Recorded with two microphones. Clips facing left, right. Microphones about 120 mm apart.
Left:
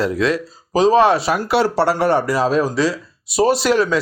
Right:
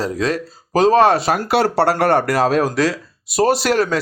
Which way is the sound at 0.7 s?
55° right (ahead or behind).